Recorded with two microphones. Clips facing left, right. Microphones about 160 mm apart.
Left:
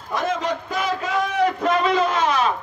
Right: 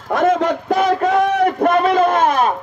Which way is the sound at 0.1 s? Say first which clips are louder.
Right 8 dB; 50° right (ahead or behind).